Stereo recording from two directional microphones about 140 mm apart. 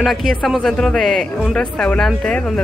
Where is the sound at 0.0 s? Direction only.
Centre (ahead or behind).